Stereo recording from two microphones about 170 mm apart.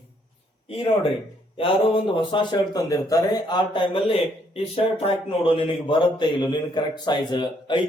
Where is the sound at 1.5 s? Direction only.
30° left (ahead or behind).